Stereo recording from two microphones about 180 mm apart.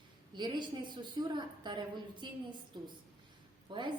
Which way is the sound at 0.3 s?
25° right (ahead or behind).